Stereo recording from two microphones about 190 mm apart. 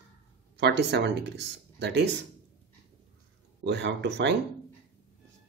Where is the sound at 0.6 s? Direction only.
60° right (ahead or behind).